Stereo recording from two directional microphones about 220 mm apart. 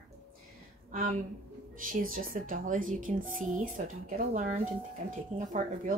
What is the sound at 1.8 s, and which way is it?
A woman's voice, 40° right (ahead or behind).